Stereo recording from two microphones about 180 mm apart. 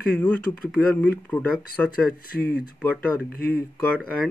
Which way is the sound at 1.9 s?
55° left (ahead or behind).